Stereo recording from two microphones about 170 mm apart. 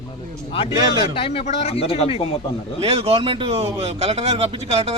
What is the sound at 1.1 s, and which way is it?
Speech, 35° left (ahead or behind).